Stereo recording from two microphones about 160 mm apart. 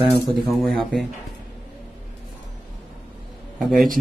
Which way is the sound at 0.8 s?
Centre (ahead or behind).